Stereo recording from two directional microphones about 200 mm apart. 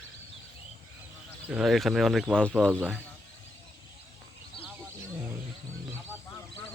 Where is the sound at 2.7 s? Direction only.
10° right (ahead or behind).